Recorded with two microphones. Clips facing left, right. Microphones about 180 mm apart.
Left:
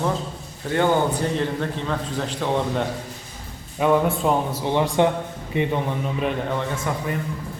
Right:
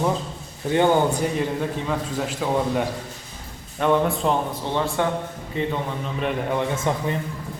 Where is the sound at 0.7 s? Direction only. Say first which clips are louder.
Right 1 dB; 15° right (ahead or behind); by 5.0 s 15° left (ahead or behind).